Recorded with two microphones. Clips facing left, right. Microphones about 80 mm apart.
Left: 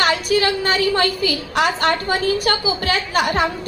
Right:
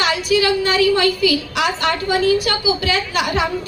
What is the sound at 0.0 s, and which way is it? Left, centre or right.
A woman's voice, left.